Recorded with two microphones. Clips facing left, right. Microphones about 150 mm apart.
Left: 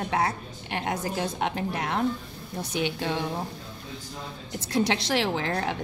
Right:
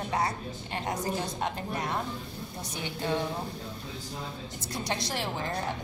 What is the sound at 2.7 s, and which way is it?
Speech, 85° left.